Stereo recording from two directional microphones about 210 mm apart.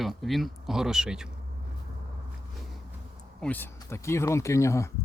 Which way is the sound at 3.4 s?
10° left (ahead or behind).